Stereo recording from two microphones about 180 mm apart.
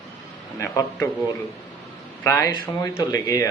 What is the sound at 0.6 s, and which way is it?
Speech, 15° left (ahead or behind).